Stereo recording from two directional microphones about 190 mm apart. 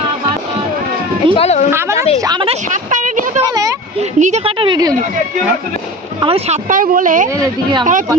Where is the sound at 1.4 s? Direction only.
35° left (ahead or behind).